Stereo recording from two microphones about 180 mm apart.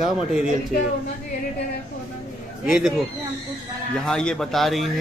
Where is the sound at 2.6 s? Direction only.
5° right (ahead or behind).